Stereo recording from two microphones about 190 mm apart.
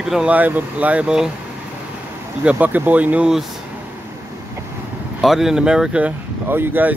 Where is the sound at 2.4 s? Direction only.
10° right (ahead or behind).